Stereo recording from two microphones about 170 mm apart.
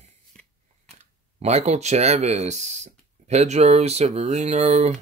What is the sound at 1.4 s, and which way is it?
Speech, 40° right (ahead or behind).